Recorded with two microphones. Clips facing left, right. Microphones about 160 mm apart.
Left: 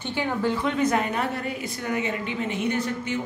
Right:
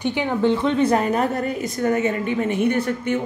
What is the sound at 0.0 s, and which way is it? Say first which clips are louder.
A woman's voice: right 6 dB; 20° right (ahead or behind).